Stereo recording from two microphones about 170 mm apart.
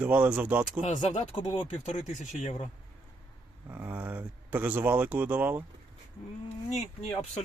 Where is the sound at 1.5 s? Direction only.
40° left (ahead or behind).